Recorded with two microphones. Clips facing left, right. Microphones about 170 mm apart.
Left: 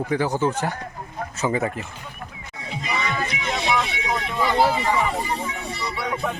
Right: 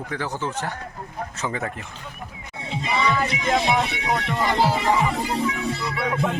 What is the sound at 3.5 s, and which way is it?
Speech, 50° right (ahead or behind).